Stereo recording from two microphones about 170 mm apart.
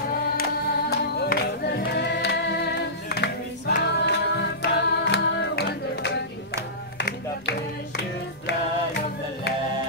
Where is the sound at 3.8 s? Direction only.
90° left.